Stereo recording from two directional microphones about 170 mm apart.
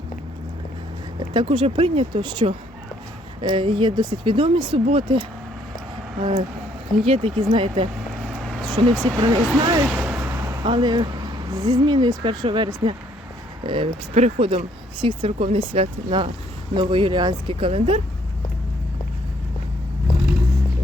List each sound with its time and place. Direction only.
1.3 s speech: 30° right (ahead or behind)
7.0 s speech: 35° right (ahead or behind)
8.4 s vehicle: centre (ahead or behind)
8.6 s speech: 25° right (ahead or behind)
9.8 s speech: 5° right (ahead or behind); by 18.0 s 35° right (ahead or behind)